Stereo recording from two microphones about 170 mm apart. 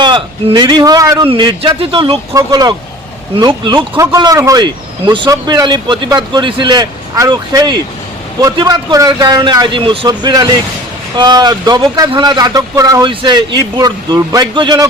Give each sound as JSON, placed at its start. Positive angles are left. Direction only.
{"t": 0.0, "sound": "speech", "side_deg": -25}
{"t": 1.3, "sound": "speech", "side_deg": -30}